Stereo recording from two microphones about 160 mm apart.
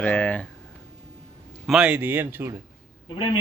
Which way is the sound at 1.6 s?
5° right (ahead or behind).